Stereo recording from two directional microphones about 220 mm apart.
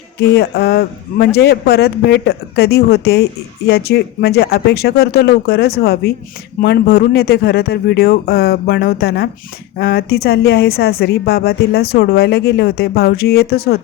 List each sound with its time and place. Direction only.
0.2 s speech: 45° left (ahead or behind)